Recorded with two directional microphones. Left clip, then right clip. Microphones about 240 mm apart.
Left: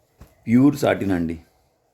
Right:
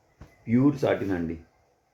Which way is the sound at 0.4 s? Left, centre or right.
Left.